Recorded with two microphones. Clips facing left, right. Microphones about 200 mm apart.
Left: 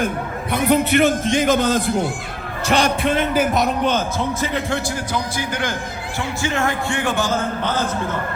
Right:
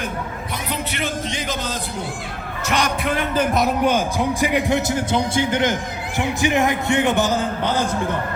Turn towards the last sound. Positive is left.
turn(degrees=-15)  # may be behind; listen again after turning